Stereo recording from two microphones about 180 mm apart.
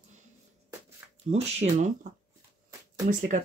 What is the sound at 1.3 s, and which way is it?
Speech, 35° right (ahead or behind).